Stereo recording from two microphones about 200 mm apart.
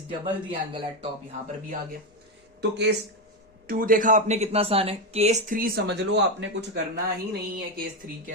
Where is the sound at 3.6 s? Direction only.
45° right (ahead or behind); by 6.8 s 60° right (ahead or behind).